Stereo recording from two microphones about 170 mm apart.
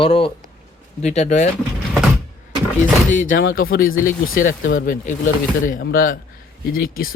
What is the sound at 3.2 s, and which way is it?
Speech, 55° left (ahead or behind).